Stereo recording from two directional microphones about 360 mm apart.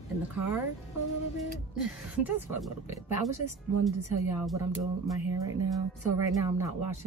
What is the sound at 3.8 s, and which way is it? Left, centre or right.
Speech, centre.